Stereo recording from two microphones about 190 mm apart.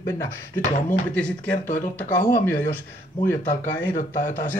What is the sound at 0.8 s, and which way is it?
Speech, 5° left (ahead or behind).